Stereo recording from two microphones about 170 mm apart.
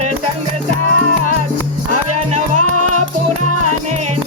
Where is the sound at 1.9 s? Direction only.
45° right (ahead or behind).